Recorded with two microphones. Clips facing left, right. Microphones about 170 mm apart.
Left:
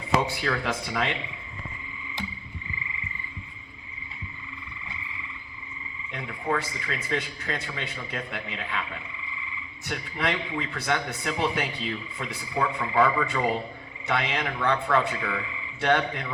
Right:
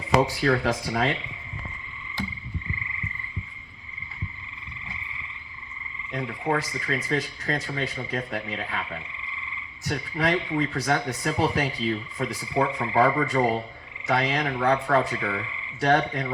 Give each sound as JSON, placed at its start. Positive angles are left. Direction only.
{"t": 0.2, "sound": "speech", "side_deg": -35}
{"t": 6.1, "sound": "speech", "side_deg": -40}
{"t": 9.8, "sound": "speech", "side_deg": -40}
{"t": 12.6, "sound": "speech", "side_deg": -25}
{"t": 13.0, "sound": "speech", "side_deg": -40}